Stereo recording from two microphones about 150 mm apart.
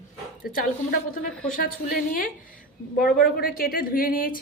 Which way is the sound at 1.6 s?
70° left (ahead or behind).